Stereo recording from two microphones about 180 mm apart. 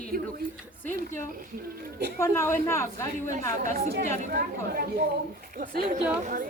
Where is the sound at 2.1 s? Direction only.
15° left (ahead or behind).